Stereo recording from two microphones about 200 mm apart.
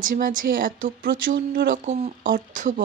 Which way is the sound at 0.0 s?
45° right (ahead or behind).